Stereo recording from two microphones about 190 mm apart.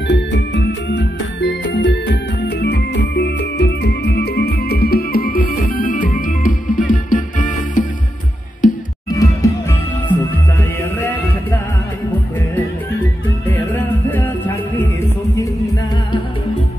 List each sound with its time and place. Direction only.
0.1 s music: 65° left (ahead or behind); by 7.8 s 40° left (ahead or behind)
9.2 s music: 15° left (ahead or behind)
13.5 s music: 10° left (ahead or behind)